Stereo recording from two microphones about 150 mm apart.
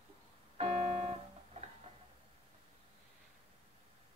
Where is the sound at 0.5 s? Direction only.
40° right (ahead or behind).